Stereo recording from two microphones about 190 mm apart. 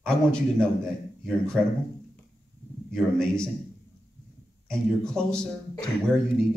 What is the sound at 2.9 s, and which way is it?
Speech, 5° left (ahead or behind).